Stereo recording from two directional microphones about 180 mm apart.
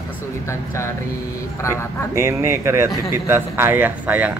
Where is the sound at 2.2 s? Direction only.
15° right (ahead or behind).